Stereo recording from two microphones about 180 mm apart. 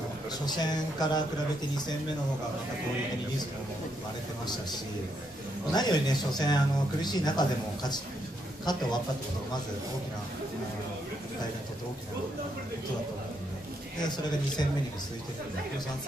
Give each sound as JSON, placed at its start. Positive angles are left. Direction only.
{"t": 0.5, "sound": "speech", "side_deg": 25}
{"t": 5.7, "sound": "speech", "side_deg": 25}
{"t": 14.0, "sound": "speech", "side_deg": 25}